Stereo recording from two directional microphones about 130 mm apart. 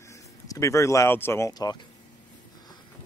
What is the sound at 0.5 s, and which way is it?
Speech, 25° left (ahead or behind).